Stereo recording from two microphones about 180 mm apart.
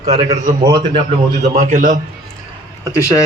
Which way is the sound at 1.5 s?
45° right (ahead or behind).